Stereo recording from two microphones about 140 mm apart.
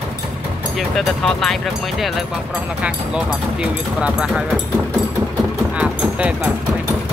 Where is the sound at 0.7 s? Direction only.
5° left (ahead or behind).